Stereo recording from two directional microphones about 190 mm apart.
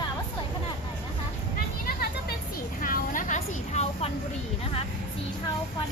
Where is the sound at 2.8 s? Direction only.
45° left (ahead or behind).